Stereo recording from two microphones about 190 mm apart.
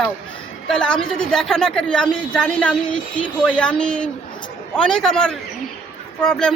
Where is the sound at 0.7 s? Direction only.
5° left (ahead or behind).